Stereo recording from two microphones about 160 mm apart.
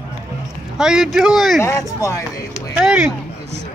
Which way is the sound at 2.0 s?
20° left (ahead or behind).